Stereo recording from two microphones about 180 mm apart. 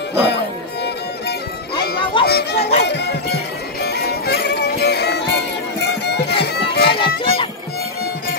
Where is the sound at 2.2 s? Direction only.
65° left (ahead or behind).